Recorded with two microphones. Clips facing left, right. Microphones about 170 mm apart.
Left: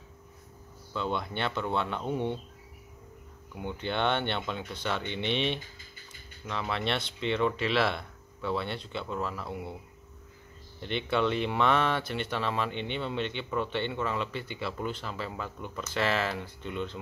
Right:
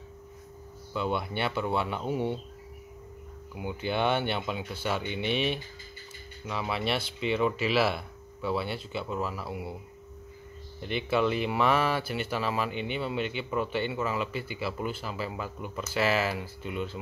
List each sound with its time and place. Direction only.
0.9 s speech: 10° right (ahead or behind)
3.5 s speech: 5° right (ahead or behind)
10.8 s speech: 5° right (ahead or behind)